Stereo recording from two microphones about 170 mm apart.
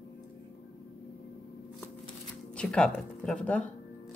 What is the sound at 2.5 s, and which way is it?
Speech, 5° left (ahead or behind).